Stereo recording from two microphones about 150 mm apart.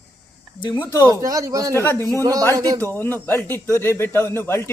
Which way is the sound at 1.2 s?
20° right (ahead or behind).